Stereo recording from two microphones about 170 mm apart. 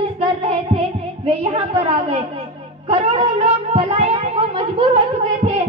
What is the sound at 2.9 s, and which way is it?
A child's voice, 35° right (ahead or behind).